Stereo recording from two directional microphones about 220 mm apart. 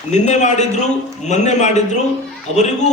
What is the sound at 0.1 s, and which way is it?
A man's voice, 30° left (ahead or behind).